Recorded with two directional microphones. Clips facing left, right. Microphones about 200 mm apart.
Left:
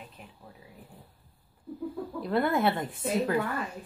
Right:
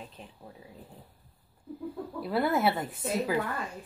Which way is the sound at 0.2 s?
30° right (ahead or behind).